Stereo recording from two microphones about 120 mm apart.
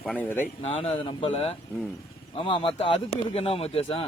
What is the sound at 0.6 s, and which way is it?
Speech, 65° left (ahead or behind).